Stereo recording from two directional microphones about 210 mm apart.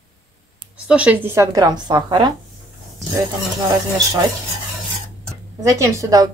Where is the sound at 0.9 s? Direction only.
5° right (ahead or behind).